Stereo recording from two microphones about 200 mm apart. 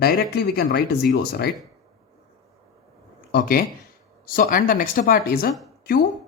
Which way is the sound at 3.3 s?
50° left (ahead or behind).